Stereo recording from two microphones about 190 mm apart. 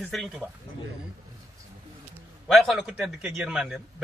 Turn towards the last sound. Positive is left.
turn(degrees=-5)  # may be behind; listen again after turning